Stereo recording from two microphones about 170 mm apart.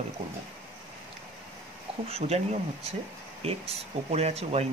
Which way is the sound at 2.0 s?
35° right (ahead or behind).